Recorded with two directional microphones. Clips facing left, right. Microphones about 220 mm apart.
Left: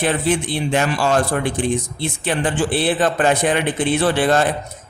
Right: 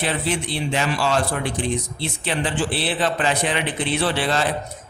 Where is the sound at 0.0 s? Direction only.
50° left (ahead or behind).